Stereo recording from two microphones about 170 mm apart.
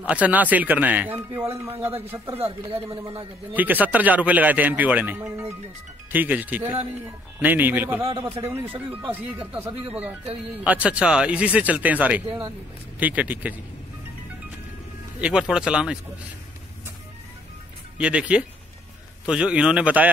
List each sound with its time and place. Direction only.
0.0 s speech: 10° right (ahead or behind)
2.3 s speech: 35° right (ahead or behind)
3.5 s speech: 10° right (ahead or behind)
8.0 s speech: 30° right (ahead or behind)
8.3 s speech: 10° right (ahead or behind)
10.6 s speech: 10° right (ahead or behind)
15.1 s speech: 5° right (ahead or behind)
17.9 s speech: 5° right (ahead or behind)